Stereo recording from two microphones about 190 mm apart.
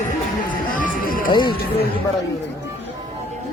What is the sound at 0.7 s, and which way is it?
Speech, 45° left (ahead or behind).